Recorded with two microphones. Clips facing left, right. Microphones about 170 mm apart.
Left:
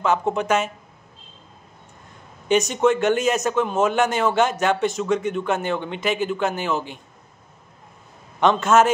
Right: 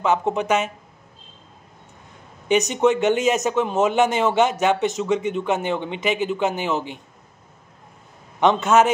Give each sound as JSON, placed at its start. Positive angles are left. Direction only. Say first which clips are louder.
{"t": 0.0, "sound": "speech", "louder": "right 1 dB", "side_deg": -20}
{"t": 2.4, "sound": "a man's voice", "louder": "even", "side_deg": -15}
{"t": 8.4, "sound": "speech", "louder": "even", "side_deg": -15}